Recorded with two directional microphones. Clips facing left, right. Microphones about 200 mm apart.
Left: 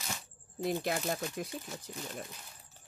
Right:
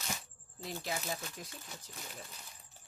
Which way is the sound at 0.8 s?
55° left (ahead or behind).